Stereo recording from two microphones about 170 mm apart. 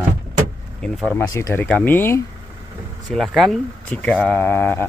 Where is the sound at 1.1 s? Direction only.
15° left (ahead or behind).